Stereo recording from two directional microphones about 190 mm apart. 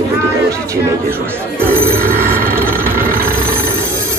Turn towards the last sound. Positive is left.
turn(degrees=-50)  # may be behind; listen again after turning